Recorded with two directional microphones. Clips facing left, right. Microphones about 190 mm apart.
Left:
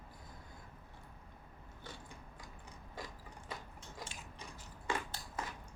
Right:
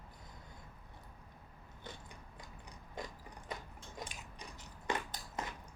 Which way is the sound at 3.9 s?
20° right (ahead or behind).